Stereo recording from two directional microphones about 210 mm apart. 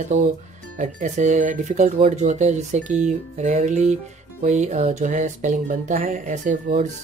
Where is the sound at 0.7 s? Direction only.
35° right (ahead or behind).